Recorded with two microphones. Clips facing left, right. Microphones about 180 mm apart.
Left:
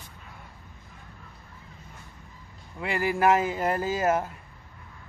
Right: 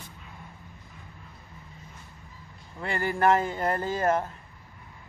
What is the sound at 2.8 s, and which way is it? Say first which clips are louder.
A man's voice: left 1 dB; 5° left (ahead or behind).